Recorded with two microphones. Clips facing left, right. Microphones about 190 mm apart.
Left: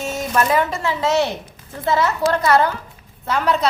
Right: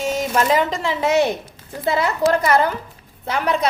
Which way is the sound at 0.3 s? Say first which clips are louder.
Left 1 dB; 15° right (ahead or behind).